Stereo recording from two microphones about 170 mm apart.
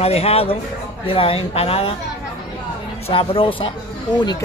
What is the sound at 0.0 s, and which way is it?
A woman's voice, 35° left (ahead or behind).